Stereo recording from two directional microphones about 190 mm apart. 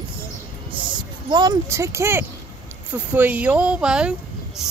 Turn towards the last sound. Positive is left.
turn(degrees=-5)  # may be behind; listen again after turning